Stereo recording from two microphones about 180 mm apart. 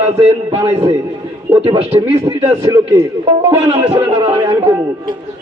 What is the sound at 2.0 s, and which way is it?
A man's voice, 20° right (ahead or behind).